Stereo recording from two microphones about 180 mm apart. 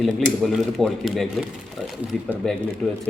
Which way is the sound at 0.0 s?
Centre (ahead or behind).